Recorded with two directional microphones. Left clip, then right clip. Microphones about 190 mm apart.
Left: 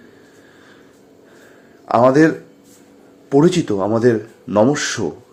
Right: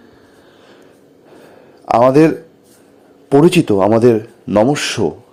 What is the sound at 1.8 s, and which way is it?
A man's voice, 35° right (ahead or behind).